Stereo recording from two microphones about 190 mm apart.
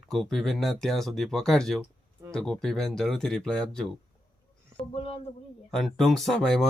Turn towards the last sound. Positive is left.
turn(degrees=0)  # may be behind; listen again after turning